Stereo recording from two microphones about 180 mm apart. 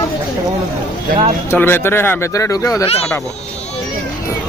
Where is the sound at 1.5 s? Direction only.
10° left (ahead or behind).